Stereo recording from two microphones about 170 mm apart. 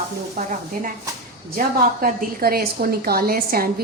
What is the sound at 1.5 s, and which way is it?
A woman's voice, 50° right (ahead or behind).